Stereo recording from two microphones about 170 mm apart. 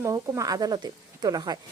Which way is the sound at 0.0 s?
20° right (ahead or behind).